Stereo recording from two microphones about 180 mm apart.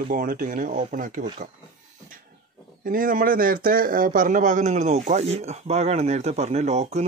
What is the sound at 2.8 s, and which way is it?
Speech, 50° right (ahead or behind).